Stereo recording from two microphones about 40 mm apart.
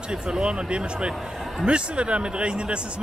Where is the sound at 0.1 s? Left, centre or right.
Right.